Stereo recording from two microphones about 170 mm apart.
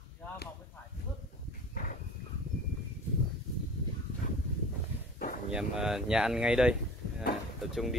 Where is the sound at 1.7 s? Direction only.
55° left (ahead or behind).